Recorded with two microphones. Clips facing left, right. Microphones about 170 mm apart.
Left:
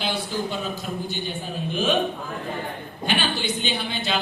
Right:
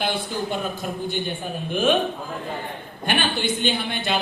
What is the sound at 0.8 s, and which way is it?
Speech, 55° right (ahead or behind).